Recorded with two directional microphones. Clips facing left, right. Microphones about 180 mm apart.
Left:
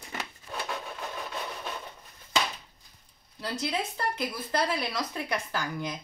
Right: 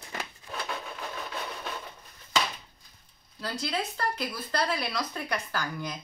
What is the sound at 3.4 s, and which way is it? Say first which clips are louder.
Speech: left 1 dB; 20° left (ahead or behind).